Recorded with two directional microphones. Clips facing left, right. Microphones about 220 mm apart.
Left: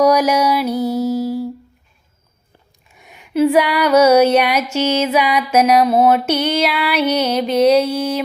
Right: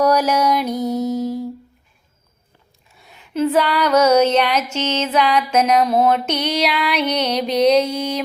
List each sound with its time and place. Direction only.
0.0 s music: 10° left (ahead or behind)
0.9 s mantra: 5° left (ahead or behind)
3.0 s a sound: 15° left (ahead or behind)
4.7 s mantra: 10° left (ahead or behind)